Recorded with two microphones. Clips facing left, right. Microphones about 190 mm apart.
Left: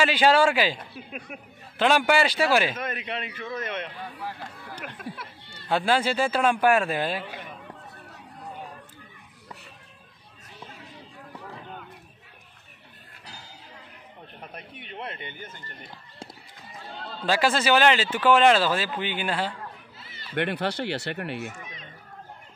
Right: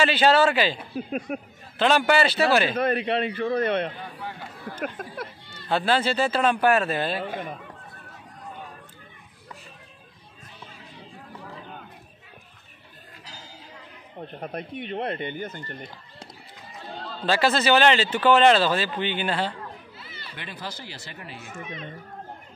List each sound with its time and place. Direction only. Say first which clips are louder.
0.0 s speech: right 1 dB; 10° left (ahead or behind)
1.3 s a man's voice: right 10 dB; 40° right (ahead or behind)
1.8 s speech: right 1 dB; 10° left (ahead or behind)
2.7 s a man's voice: right 9 dB; 35° right (ahead or behind)
5.7 s speech: even; 10° left (ahead or behind)
7.2 s speech: right 6 dB; 45° right (ahead or behind)
14.4 s speech: right 10 dB; 45° right (ahead or behind)
17.3 s speech: right 1 dB; 10° left (ahead or behind)
20.3 s speech: left 12 dB; 65° left (ahead or behind)